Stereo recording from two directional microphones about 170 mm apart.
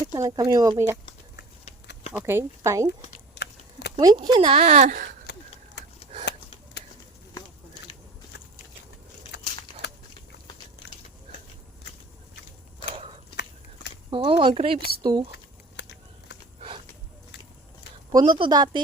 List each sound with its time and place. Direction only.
0.1 s speech: 20° right (ahead or behind)
2.1 s speech: 15° right (ahead or behind)
3.3 s a sound: 85° left
4.0 s speech: 25° right (ahead or behind); by 5.0 s 50° right (ahead or behind)
5.2 s a sound: 85° left
14.1 s speech: 30° right (ahead or behind)
18.1 s speech: 25° right (ahead or behind)